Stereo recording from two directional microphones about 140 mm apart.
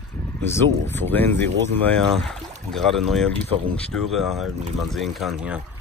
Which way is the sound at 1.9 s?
5° left (ahead or behind).